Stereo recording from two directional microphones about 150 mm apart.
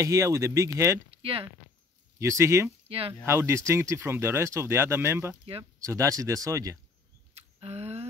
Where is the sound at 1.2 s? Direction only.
40° right (ahead or behind).